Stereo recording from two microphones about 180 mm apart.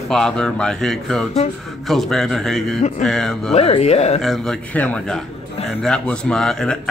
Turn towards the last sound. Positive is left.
turn(degrees=0)  # may be behind; listen again after turning